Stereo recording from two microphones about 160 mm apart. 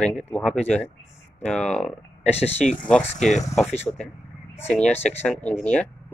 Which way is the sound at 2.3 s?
45° left (ahead or behind).